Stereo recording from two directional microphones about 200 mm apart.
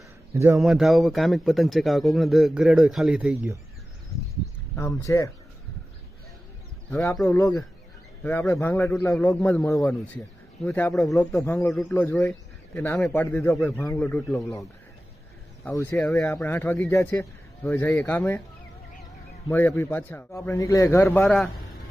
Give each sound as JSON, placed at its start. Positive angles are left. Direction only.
{"t": 0.3, "sound": "speech", "side_deg": -15}
{"t": 0.6, "sound": "speech", "side_deg": 0}
{"t": 4.8, "sound": "speech", "side_deg": 15}
{"t": 6.9, "sound": "speech", "side_deg": 5}
{"t": 15.6, "sound": "speech", "side_deg": 10}
{"t": 19.5, "sound": "speech", "side_deg": 10}